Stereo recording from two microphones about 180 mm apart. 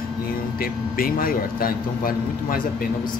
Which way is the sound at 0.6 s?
55° left (ahead or behind).